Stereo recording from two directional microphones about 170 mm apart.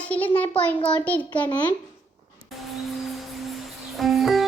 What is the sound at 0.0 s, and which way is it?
Speech, 10° left (ahead or behind).